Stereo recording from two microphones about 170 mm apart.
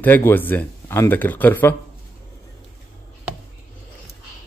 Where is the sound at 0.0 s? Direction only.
10° left (ahead or behind).